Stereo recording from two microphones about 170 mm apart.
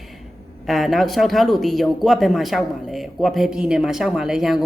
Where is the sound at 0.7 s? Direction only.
Centre (ahead or behind).